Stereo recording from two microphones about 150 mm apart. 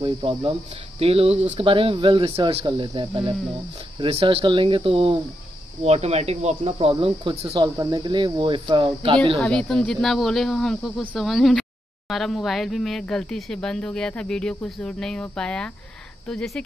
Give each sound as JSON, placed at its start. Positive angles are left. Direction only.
{"t": 0.0, "sound": "speech", "side_deg": -35}
{"t": 5.9, "sound": "speech", "side_deg": -45}
{"t": 7.5, "sound": "speech", "side_deg": -25}
{"t": 9.4, "sound": "speech", "side_deg": 5}